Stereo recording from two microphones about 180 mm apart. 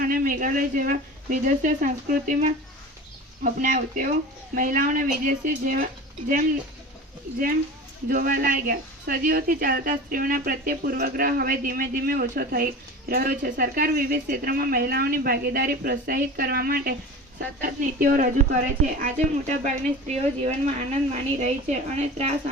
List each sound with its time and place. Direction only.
0.0 s a woman's voice: 50° right (ahead or behind)
8.0 s a woman's voice: 55° right (ahead or behind); by 22.4 s 40° right (ahead or behind)